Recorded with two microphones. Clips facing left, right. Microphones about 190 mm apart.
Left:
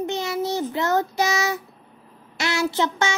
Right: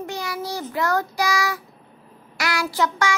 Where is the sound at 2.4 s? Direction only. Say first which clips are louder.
Left 1 dB; 25° left (ahead or behind).